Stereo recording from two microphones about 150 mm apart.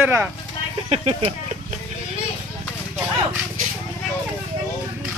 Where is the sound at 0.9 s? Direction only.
45° right (ahead or behind).